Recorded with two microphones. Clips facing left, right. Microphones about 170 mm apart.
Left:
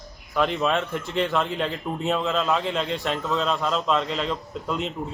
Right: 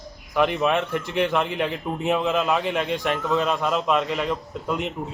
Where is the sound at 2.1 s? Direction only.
15° right (ahead or behind).